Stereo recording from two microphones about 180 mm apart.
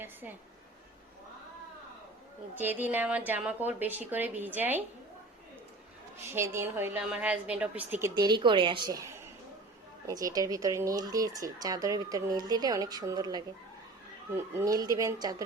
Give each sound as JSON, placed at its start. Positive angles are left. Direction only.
{"t": 0.0, "sound": "a sound", "side_deg": -10}
{"t": 2.6, "sound": "a woman's voice", "side_deg": -10}
{"t": 6.2, "sound": "a woman's voice", "side_deg": -15}
{"t": 8.1, "sound": "speech", "side_deg": -25}